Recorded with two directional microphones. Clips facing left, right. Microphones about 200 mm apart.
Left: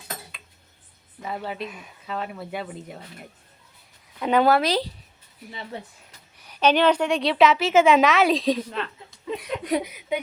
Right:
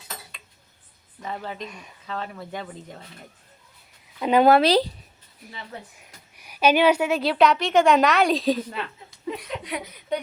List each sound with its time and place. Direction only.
1.2 s speech: 5° left (ahead or behind)
4.2 s speech: 15° right (ahead or behind)
4.6 s speech: 35° right (ahead or behind)
6.3 s a woman's voice: 10° right (ahead or behind)
9.8 s speech: 10° left (ahead or behind)